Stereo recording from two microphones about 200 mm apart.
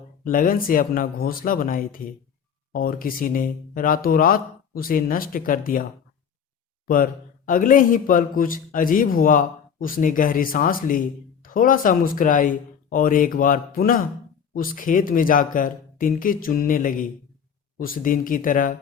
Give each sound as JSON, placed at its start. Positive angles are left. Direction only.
{"t": 0.3, "sound": "a man's voice", "side_deg": 45}
{"t": 6.8, "sound": "a man's voice", "side_deg": 45}